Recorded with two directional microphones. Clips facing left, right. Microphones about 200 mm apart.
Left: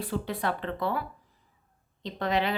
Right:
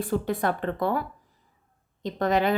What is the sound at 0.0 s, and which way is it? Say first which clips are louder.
Speech: right 5 dB; 45° right (ahead or behind).